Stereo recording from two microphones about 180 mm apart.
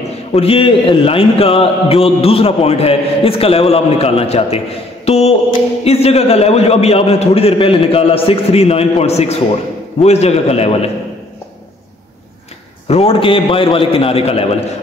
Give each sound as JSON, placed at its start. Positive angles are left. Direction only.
{"t": 0.3, "sound": "speech", "side_deg": 35}
{"t": 5.0, "sound": "mantra", "side_deg": 35}
{"t": 5.9, "sound": "speech", "side_deg": 35}
{"t": 12.8, "sound": "speech", "side_deg": 35}